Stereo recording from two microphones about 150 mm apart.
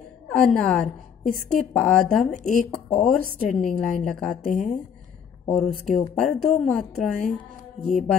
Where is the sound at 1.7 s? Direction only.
5° left (ahead or behind).